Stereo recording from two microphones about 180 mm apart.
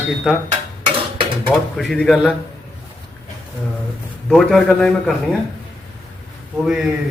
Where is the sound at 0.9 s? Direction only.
30° right (ahead or behind).